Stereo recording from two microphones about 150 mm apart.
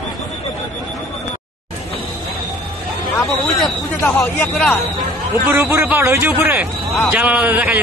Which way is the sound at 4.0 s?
15° left (ahead or behind).